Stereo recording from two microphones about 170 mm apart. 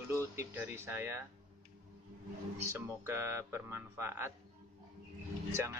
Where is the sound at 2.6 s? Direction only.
15° right (ahead or behind).